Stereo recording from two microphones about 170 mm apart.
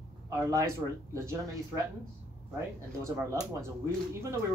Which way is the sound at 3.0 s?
15° right (ahead or behind).